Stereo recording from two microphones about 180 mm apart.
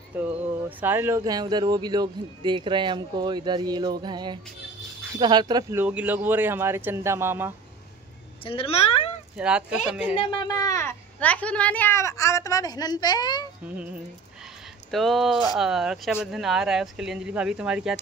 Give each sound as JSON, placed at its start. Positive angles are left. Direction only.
{"t": 0.2, "sound": "speech", "side_deg": -10}
{"t": 8.5, "sound": "speech", "side_deg": 30}
{"t": 9.4, "sound": "speech", "side_deg": -5}
{"t": 10.1, "sound": "a woman's voice", "side_deg": 25}
{"t": 14.9, "sound": "speech", "side_deg": 0}